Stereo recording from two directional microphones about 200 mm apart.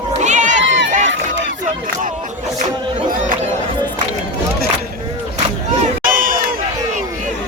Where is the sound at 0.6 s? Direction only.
65° right (ahead or behind).